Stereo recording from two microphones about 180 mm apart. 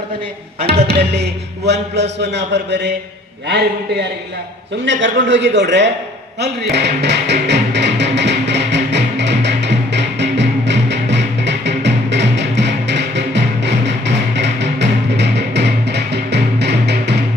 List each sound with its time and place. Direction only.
0.9 s a man's voice: 65° right (ahead or behind)
4.9 s a man's voice: 85° right
6.4 s music: 70° right (ahead or behind)